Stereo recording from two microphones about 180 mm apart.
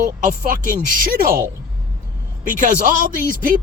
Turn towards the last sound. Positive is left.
turn(degrees=-50)  # may be behind; listen again after turning